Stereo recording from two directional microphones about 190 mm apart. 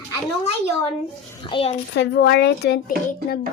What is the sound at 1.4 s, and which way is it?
Speech, 25° left (ahead or behind).